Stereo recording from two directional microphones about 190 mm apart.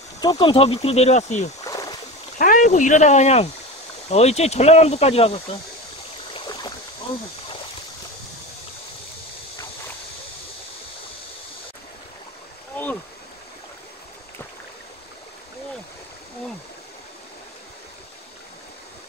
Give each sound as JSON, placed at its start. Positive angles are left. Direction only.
{"t": 0.2, "sound": "speech", "side_deg": 25}
{"t": 1.6, "sound": "rowboat", "side_deg": 20}
{"t": 2.3, "sound": "speech", "side_deg": 45}
{"t": 6.3, "sound": "stream", "side_deg": 25}